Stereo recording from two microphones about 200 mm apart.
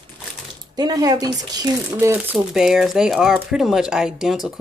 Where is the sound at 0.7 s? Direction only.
20° right (ahead or behind).